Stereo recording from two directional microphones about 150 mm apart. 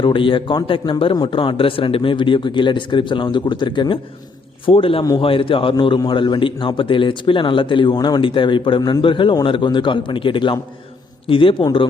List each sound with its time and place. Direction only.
0.0 s a man's voice: 35° left (ahead or behind)